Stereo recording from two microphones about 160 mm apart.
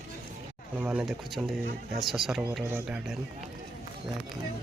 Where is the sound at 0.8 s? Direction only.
5° right (ahead or behind).